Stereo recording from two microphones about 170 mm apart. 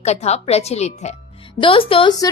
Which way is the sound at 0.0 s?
40° left (ahead or behind).